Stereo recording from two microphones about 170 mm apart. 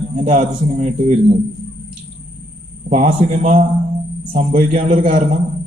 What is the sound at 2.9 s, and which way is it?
Speech, 50° right (ahead or behind).